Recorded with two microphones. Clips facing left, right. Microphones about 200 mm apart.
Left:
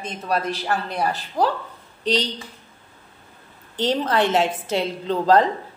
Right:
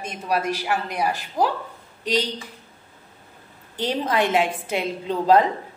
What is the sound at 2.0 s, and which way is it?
Speech, 10° right (ahead or behind).